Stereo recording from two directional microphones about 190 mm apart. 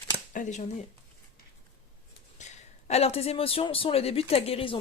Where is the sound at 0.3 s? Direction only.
40° left (ahead or behind).